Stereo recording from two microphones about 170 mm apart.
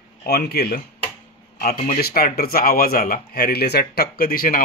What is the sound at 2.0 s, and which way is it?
Speech, 60° left (ahead or behind).